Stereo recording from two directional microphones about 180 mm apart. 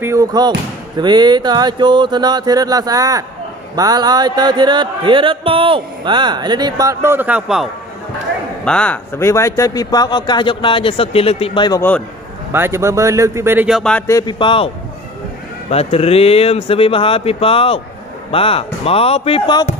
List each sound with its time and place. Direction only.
0.0 s a sound: 15° right (ahead or behind)
8.6 s speech: 5° left (ahead or behind); by 11.8 s 25° left (ahead or behind)
12.5 s speech: 15° right (ahead or behind)
14.0 s speech: 20° left (ahead or behind)
15.7 s speech: 35° left (ahead or behind)